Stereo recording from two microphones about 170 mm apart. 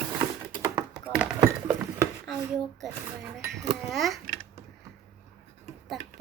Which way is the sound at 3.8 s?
Centre (ahead or behind).